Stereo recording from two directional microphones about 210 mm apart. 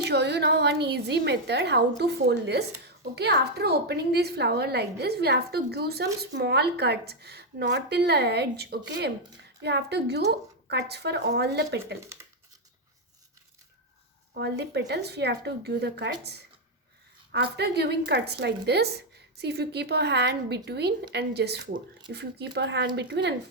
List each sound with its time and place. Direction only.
0.0 s a woman's voice: 55° right (ahead or behind)
14.3 s a woman's voice: 50° right (ahead or behind)